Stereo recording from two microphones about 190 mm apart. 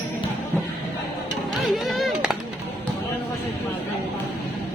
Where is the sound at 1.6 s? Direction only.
Centre (ahead or behind).